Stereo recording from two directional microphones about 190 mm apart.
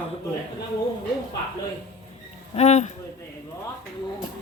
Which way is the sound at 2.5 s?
35° left (ahead or behind).